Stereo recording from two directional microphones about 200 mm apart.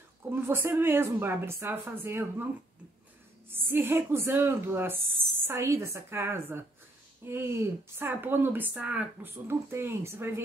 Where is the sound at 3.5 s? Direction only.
10° right (ahead or behind).